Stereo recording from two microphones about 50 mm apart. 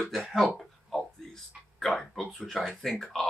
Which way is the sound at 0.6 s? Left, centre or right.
Centre.